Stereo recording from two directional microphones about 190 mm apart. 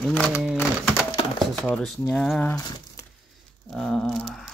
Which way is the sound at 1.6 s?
Centre (ahead or behind).